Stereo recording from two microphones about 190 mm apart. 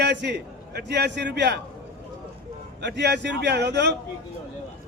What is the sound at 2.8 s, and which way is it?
A man's voice, 65° right (ahead or behind).